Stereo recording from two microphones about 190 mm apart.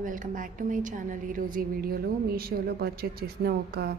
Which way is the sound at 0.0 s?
45° right (ahead or behind).